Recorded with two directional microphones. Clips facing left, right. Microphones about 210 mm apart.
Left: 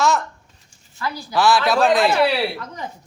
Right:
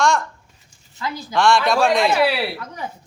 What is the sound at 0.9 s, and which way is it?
Speech, 20° right (ahead or behind).